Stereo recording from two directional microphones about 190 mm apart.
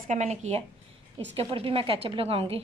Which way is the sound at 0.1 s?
35° right (ahead or behind).